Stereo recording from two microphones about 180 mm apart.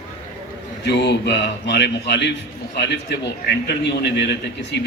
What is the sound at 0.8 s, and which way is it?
A man's voice, 70° left (ahead or behind).